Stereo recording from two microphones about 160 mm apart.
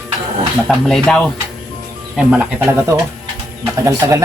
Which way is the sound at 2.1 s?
10° right (ahead or behind).